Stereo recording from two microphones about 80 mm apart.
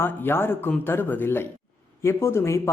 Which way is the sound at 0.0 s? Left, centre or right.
Left.